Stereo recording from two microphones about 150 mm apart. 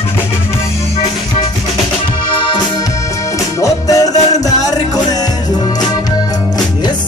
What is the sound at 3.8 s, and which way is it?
Music, 25° left (ahead or behind).